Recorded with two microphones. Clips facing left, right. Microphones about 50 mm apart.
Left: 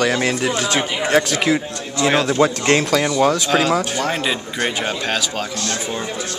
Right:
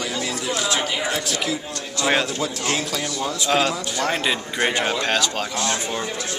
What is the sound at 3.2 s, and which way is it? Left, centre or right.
Speech, left.